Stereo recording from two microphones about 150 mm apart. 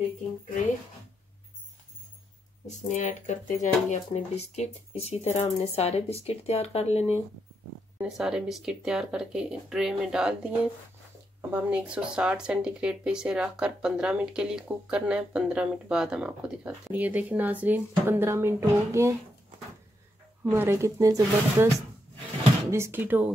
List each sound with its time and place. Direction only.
2.9 s speech: 55° left (ahead or behind)
8.0 s speech: 5° right (ahead or behind)
20.4 s speech: 15° right (ahead or behind)